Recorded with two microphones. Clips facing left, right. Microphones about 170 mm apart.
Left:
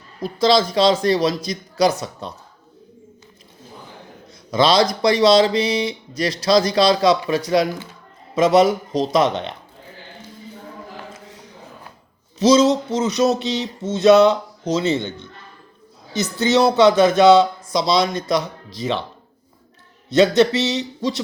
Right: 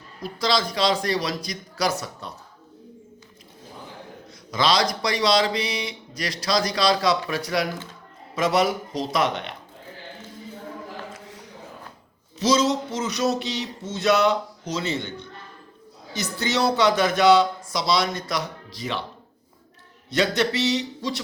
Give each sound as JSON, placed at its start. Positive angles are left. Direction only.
{"t": 0.2, "sound": "speech", "side_deg": 25}
{"t": 4.5, "sound": "speech", "side_deg": 25}
{"t": 12.4, "sound": "speech", "side_deg": 20}
{"t": 20.1, "sound": "speech", "side_deg": 25}